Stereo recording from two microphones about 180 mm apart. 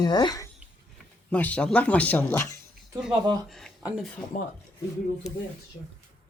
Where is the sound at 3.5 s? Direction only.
Centre (ahead or behind).